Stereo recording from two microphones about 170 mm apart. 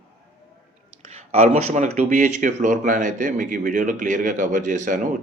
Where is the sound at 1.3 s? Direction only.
40° right (ahead or behind).